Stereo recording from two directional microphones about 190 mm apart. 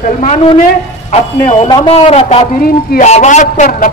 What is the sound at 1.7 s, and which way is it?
A man's voice, 25° left (ahead or behind).